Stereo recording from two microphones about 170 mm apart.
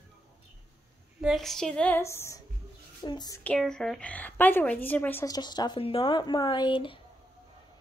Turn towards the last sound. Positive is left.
turn(degrees=30)  # may be behind; listen again after turning